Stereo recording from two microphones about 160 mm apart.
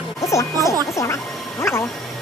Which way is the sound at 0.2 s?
20° left (ahead or behind).